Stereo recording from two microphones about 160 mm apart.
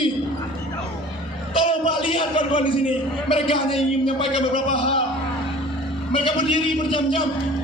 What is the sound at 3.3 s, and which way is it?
Speech, 35° left (ahead or behind).